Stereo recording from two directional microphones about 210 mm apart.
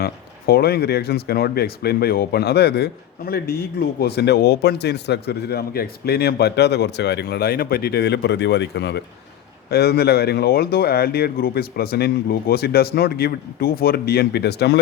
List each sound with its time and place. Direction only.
0.0 s speech: 45° left (ahead or behind)